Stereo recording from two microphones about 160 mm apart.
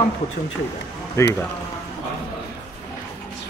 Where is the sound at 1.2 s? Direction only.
20° left (ahead or behind).